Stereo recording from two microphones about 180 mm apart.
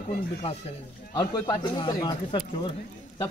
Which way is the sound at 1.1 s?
25° left (ahead or behind).